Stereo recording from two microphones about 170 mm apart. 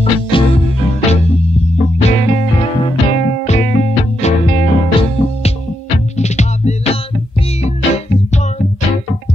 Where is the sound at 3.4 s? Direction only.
40° left (ahead or behind).